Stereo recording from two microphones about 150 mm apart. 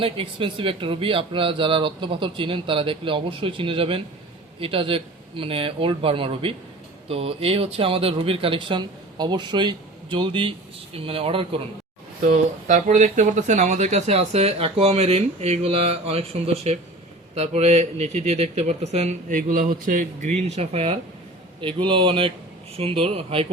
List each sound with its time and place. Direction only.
0.0 s speech: 35° right (ahead or behind)
12.2 s speech: 60° right (ahead or behind)
19.3 s speech: 65° right (ahead or behind)
20.6 s speech: 40° right (ahead or behind)